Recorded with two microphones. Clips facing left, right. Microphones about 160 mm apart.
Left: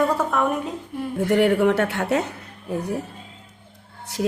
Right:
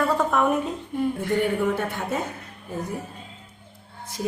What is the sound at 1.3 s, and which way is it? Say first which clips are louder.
A woman's voice: left 8 dB; 75° left (ahead or behind).